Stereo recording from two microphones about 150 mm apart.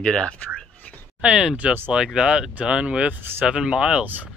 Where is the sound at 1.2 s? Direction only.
5° right (ahead or behind).